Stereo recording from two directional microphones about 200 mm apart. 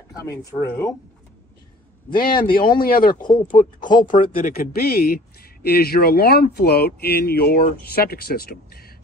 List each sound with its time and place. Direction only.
0.3 s speech: 15° left (ahead or behind)
2.0 s speech: 45° left (ahead or behind)